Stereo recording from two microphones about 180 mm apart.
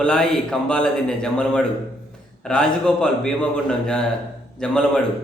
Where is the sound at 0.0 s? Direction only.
5° left (ahead or behind).